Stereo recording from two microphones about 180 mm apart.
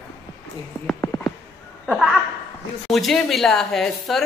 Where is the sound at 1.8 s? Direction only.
5° left (ahead or behind).